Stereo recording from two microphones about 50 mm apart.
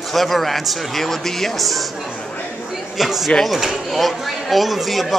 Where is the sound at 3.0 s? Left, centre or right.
Centre.